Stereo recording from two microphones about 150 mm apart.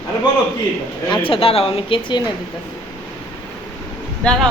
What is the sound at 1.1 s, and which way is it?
A woman's voice, 35° left (ahead or behind).